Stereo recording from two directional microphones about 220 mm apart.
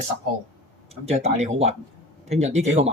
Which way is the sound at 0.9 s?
30° right (ahead or behind).